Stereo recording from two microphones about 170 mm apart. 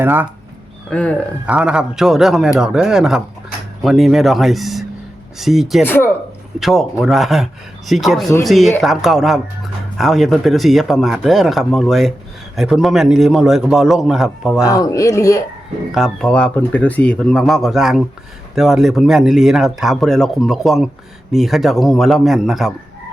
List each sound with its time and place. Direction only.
0.0 s speech: 10° right (ahead or behind)
0.9 s speech: 5° left (ahead or behind)
1.5 s speech: 5° right (ahead or behind)
5.8 s speech: 10° left (ahead or behind)
6.6 s speech: centre (ahead or behind)
14.7 s a man's voice: 20° left (ahead or behind)
15.9 s speech: centre (ahead or behind)